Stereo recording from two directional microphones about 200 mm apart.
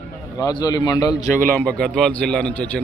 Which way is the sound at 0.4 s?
20° left (ahead or behind).